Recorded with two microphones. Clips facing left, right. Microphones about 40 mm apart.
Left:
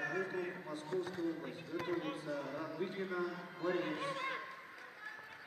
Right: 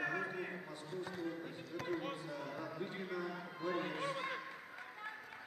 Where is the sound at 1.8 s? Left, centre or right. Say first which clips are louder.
Left 1 dB; centre.